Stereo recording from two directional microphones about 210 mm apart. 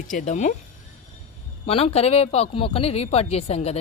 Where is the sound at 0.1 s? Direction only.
40° left (ahead or behind).